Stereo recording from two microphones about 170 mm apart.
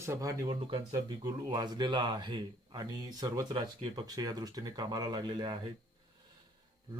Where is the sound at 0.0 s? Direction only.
20° right (ahead or behind).